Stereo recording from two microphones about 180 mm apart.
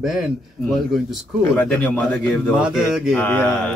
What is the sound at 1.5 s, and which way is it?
A man's voice, 10° left (ahead or behind).